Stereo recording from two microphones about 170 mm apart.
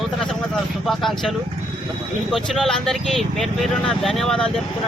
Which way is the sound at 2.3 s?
Centre (ahead or behind).